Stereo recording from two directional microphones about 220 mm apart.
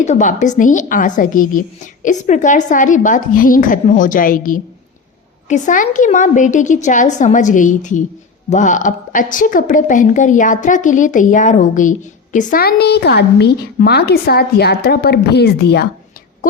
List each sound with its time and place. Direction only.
0.0 s a woman's voice: 35° left (ahead or behind)